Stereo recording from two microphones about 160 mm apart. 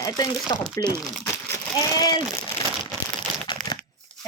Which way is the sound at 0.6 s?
5° left (ahead or behind).